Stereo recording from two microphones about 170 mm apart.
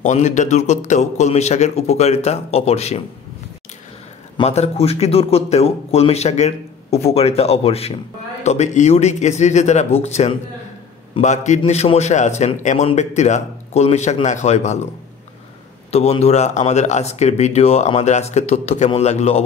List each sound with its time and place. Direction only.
0.0 s a man's voice: 45° left (ahead or behind)
4.4 s a man's voice: 35° left (ahead or behind)
15.9 s a man's voice: 40° left (ahead or behind)